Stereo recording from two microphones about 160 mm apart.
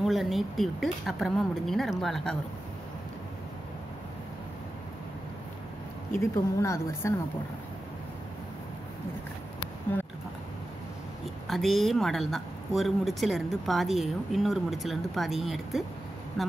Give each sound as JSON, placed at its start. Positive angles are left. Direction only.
{"t": 0.0, "sound": "speech", "side_deg": 0}
{"t": 6.1, "sound": "a woman's voice", "side_deg": 15}
{"t": 9.9, "sound": "speech", "side_deg": 10}
{"t": 11.4, "sound": "speech", "side_deg": 0}